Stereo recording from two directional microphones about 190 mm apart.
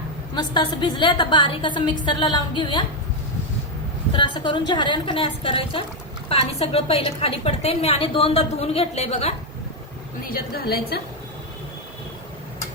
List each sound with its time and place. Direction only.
0.3 s a woman's voice: 25° left (ahead or behind)
4.1 s a woman's voice: 25° left (ahead or behind)
10.2 s a woman's voice: 55° left (ahead or behind)